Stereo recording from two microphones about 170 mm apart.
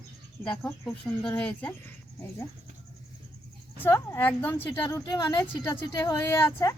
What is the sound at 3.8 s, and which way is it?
Speech, 15° left (ahead or behind).